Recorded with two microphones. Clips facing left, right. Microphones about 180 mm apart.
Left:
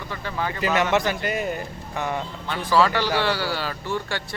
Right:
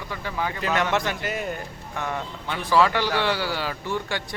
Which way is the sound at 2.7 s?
15° right (ahead or behind).